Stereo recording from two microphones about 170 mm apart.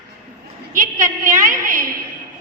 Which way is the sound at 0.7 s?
50° right (ahead or behind).